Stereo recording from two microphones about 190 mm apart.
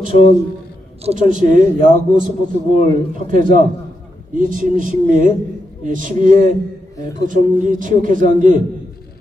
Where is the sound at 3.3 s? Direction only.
45° right (ahead or behind).